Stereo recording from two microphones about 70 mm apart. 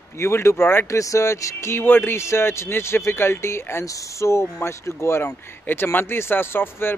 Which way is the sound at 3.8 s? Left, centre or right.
Left.